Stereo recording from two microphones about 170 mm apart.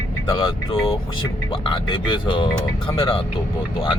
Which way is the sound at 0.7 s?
35° left (ahead or behind).